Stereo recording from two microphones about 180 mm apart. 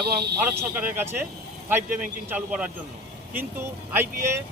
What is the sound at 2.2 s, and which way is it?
Speech, 10° right (ahead or behind).